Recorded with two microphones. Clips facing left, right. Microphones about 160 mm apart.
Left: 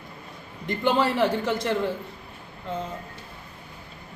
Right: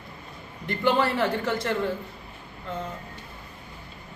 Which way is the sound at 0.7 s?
15° left (ahead or behind).